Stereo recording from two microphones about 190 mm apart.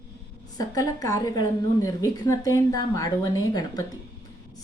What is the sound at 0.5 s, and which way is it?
A woman's voice, 20° left (ahead or behind).